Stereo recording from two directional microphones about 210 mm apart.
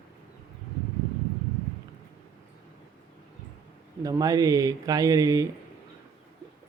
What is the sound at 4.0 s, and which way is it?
A man's voice, 15° right (ahead or behind).